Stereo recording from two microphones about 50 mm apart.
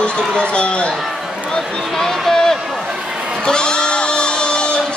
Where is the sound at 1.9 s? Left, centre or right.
Centre.